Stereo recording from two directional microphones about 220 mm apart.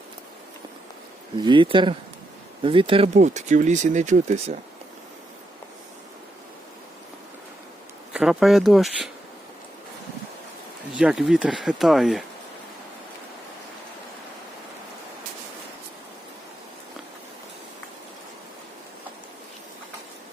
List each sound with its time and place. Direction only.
1.5 s speech: 20° right (ahead or behind)
8.1 s speech: centre (ahead or behind)
10.9 s speech: 5° right (ahead or behind)